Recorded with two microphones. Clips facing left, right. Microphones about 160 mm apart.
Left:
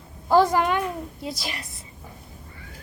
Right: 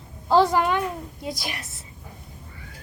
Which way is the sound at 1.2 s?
Centre (ahead or behind).